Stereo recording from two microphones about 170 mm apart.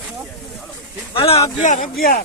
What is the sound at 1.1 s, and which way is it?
Speech, 35° left (ahead or behind).